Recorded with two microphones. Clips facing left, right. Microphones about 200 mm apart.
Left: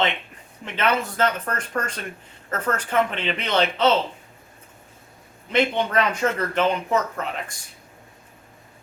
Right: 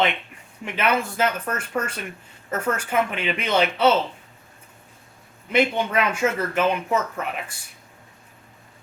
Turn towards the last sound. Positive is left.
turn(degrees=-10)  # may be behind; listen again after turning